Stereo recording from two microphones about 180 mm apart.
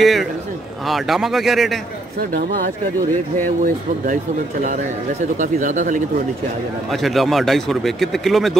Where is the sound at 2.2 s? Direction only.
55° right (ahead or behind).